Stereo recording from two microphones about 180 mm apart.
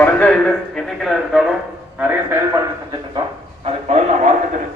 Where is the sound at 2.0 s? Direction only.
15° right (ahead or behind).